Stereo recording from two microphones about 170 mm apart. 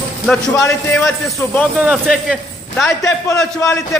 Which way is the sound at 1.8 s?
Centre (ahead or behind).